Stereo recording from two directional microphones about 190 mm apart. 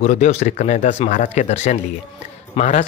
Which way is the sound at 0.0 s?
35° left (ahead or behind).